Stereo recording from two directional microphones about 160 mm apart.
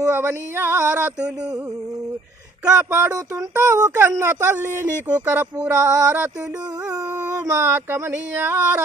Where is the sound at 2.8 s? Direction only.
15° right (ahead or behind).